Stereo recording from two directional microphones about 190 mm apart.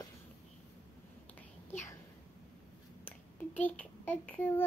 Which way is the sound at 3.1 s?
10° left (ahead or behind).